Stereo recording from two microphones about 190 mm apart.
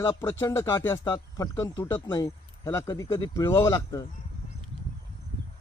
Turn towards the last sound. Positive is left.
turn(degrees=20)  # may be behind; listen again after turning